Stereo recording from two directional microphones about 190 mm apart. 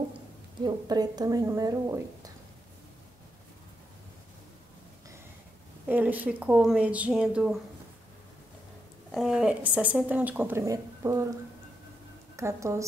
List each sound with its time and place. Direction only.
0.7 s a woman's voice: 20° right (ahead or behind)
5.9 s speech: 10° right (ahead or behind)
9.1 s speech: 5° right (ahead or behind)
12.4 s speech: 15° right (ahead or behind)